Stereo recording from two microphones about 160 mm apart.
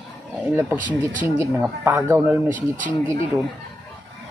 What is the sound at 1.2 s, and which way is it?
Speech, 15° right (ahead or behind).